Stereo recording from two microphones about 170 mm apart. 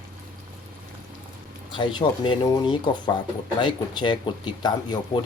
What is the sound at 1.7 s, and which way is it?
Speech, 25° left (ahead or behind).